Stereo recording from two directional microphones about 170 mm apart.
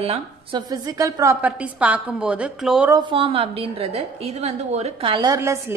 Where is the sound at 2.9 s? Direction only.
30° right (ahead or behind).